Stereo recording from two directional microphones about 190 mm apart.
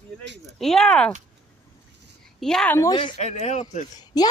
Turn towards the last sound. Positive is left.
turn(degrees=20)  # may be behind; listen again after turning